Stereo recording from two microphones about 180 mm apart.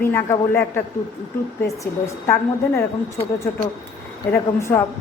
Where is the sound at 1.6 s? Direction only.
15° left (ahead or behind).